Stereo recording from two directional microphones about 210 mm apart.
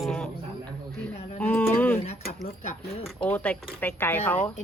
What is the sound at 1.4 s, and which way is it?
Speech, 5° left (ahead or behind).